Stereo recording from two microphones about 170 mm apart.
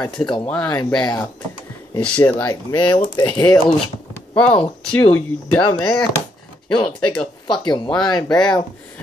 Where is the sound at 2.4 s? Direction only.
25° left (ahead or behind).